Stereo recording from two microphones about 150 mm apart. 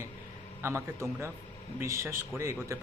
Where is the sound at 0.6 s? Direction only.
15° right (ahead or behind).